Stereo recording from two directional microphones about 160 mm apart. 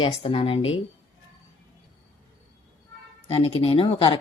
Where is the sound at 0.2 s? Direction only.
35° left (ahead or behind).